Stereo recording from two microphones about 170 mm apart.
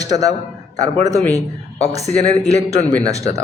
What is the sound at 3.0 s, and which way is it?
Speech, 20° right (ahead or behind).